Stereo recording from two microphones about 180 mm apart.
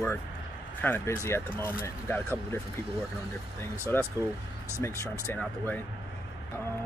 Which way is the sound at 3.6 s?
10° left (ahead or behind).